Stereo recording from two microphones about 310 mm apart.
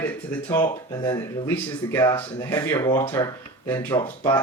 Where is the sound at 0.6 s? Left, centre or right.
Centre.